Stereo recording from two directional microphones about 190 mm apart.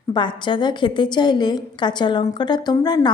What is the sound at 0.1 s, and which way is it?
Speech, 25° left (ahead or behind).